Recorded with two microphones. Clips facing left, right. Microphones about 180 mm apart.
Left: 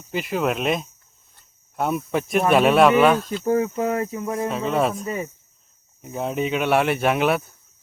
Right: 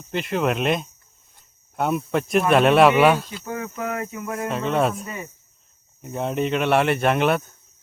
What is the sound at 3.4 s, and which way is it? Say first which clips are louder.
Cricket: left 8 dB; 35° left (ahead or behind).